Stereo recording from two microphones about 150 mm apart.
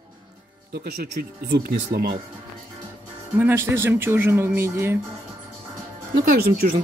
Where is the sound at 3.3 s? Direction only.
15° right (ahead or behind).